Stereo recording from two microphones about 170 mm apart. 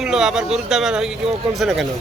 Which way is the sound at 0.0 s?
5° right (ahead or behind).